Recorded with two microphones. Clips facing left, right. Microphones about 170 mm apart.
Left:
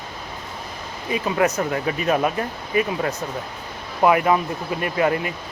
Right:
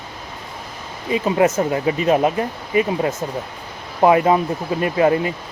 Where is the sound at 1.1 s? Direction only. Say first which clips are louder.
Right 4 dB; 25° right (ahead or behind).